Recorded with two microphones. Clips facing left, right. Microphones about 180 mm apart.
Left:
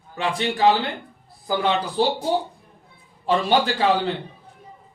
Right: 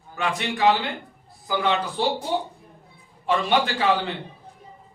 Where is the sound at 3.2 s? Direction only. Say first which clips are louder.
Left 2 dB; 35° left (ahead or behind).